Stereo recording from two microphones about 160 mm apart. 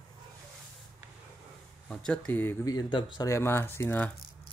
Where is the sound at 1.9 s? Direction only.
5° left (ahead or behind).